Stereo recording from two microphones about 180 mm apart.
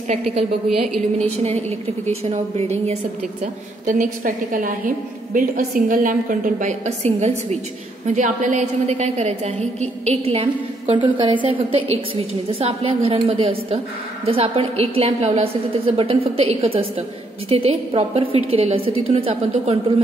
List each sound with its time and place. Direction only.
0.7 s a woman's voice: centre (ahead or behind)
2.0 s a woman's voice: 35° right (ahead or behind)